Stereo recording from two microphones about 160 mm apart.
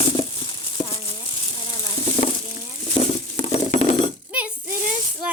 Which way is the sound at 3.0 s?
35° left (ahead or behind).